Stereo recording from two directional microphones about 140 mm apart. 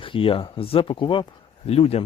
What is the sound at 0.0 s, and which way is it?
Speech, 40° left (ahead or behind).